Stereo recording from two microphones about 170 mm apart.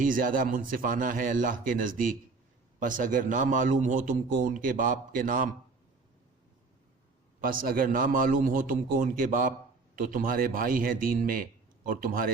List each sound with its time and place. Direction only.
0.0 s a man's voice: 55° right (ahead or behind)
7.4 s a man's voice: 55° right (ahead or behind)